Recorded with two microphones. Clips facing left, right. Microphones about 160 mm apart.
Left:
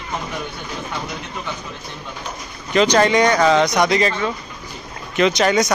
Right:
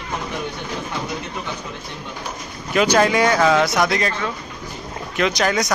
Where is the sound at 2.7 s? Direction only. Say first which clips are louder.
Left 2 dB; 5° right (ahead or behind).